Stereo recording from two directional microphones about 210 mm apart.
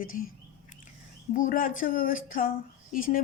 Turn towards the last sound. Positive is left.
turn(degrees=40)  # may be behind; listen again after turning